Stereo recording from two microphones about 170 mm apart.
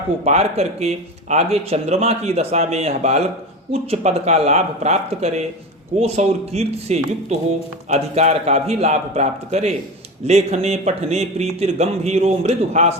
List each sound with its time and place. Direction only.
0.3 s speech: 40° right (ahead or behind)